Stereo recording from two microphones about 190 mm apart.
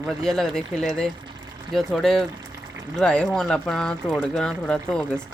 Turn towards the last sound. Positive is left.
turn(degrees=5)  # may be behind; listen again after turning